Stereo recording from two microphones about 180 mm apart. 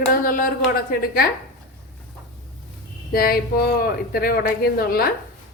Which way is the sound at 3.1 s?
55° left (ahead or behind).